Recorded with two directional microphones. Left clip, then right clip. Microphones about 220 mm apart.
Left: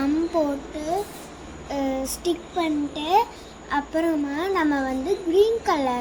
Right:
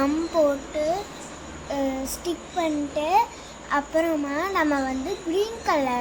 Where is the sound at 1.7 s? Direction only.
Centre (ahead or behind).